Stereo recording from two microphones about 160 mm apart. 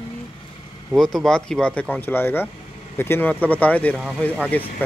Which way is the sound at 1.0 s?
Centre (ahead or behind).